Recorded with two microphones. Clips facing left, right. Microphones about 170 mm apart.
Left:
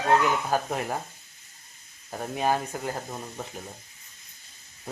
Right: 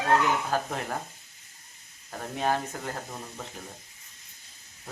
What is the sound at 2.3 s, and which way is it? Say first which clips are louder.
Speech: left 2 dB; 10° left (ahead or behind).